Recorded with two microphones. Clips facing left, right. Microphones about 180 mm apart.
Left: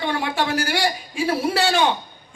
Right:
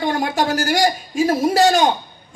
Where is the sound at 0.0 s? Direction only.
40° right (ahead or behind).